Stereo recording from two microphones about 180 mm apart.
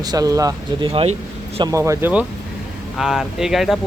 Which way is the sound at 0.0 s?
20° right (ahead or behind).